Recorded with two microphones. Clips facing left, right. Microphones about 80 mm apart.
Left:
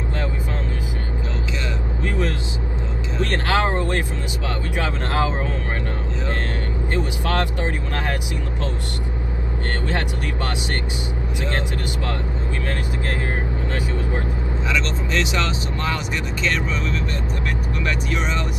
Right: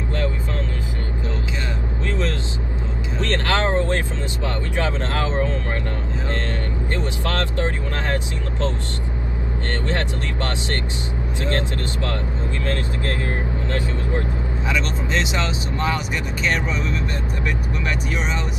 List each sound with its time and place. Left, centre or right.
3.2 s vehicle: centre
6.9 s speech: centre
9.8 s speech: centre
14.7 s speech: right